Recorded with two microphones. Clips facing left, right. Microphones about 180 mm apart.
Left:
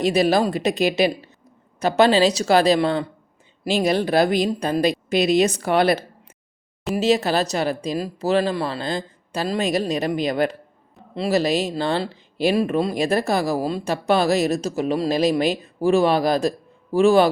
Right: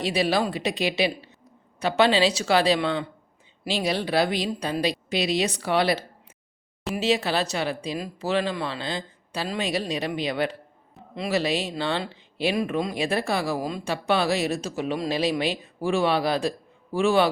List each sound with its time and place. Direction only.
0.0 s speech: 45° left (ahead or behind)